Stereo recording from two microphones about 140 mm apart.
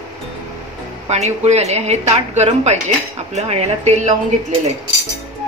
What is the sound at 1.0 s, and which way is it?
Speech, 50° right (ahead or behind).